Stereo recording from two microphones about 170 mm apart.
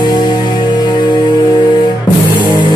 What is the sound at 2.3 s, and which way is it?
Music, 25° left (ahead or behind).